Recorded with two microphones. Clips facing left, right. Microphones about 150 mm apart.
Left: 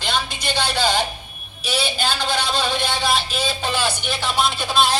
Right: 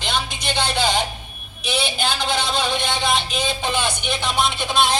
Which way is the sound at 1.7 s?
5° left (ahead or behind).